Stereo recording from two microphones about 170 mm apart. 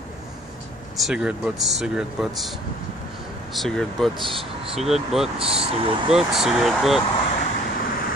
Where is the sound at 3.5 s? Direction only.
Centre (ahead or behind).